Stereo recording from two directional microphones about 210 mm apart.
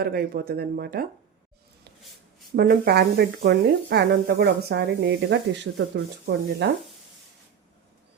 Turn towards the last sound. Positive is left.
turn(degrees=-55)  # may be behind; listen again after turning